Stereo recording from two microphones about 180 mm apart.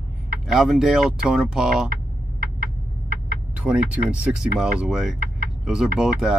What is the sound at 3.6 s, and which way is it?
Speech, 5° right (ahead or behind).